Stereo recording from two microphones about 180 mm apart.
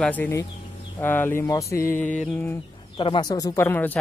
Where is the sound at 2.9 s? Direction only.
30° left (ahead or behind); by 4.0 s 10° left (ahead or behind).